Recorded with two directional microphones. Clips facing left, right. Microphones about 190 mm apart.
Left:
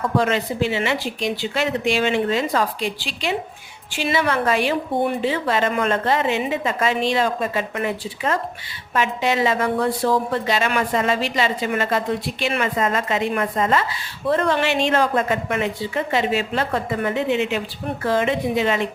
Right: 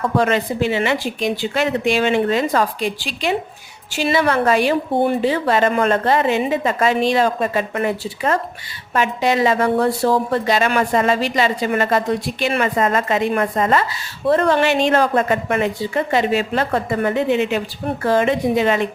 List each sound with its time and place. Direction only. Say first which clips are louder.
0.2 s a woman's voice: right 3 dB; 55° right (ahead or behind)